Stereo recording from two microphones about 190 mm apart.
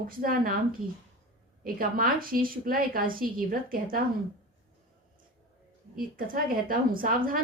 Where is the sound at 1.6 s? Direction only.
50° right (ahead or behind).